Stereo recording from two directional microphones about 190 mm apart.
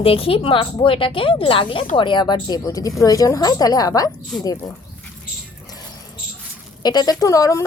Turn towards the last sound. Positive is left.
turn(degrees=15)  # may be behind; listen again after turning